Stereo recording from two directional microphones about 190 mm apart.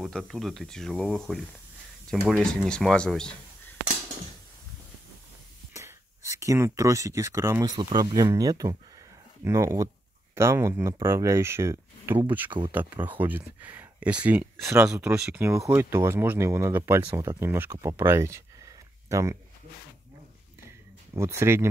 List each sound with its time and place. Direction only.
0.0 s speech: 5° left (ahead or behind)
5.8 s speech: 15° right (ahead or behind)
20.6 s a sound: 15° right (ahead or behind)